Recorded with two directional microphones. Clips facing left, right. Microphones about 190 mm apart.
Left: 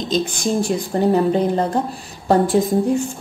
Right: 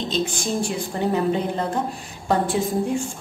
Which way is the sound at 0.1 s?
40° left (ahead or behind).